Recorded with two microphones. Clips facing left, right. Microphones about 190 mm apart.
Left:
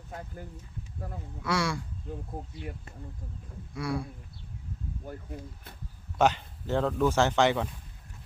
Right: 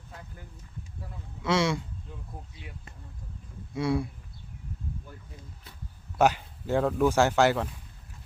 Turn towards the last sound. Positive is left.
turn(degrees=-5)  # may be behind; listen again after turning